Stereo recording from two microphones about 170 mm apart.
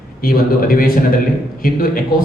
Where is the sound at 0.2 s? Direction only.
60° left (ahead or behind).